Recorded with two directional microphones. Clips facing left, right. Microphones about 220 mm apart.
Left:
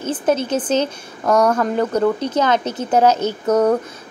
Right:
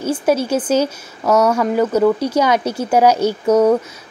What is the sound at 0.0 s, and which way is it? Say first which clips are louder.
A woman's voice: right 2 dB; 10° right (ahead or behind).